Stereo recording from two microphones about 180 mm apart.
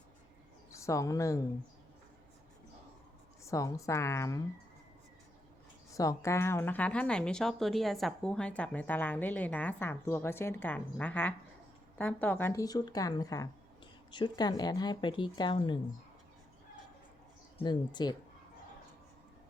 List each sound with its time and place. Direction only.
0.7 s speech: 15° left (ahead or behind)
3.4 s speech: 15° left (ahead or behind)
5.9 s speech: 20° left (ahead or behind)
17.6 s speech: 25° left (ahead or behind)